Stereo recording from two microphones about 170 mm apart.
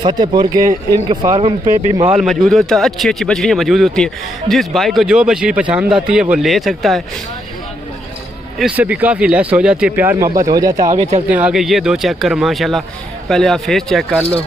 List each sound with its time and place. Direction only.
0.0 s speech: 25° right (ahead or behind)
2.1 s a man's voice: centre (ahead or behind)
8.5 s speech: 5° right (ahead or behind)
11.0 s speech: 40° right (ahead or behind)
11.2 s a man's voice: 10° right (ahead or behind)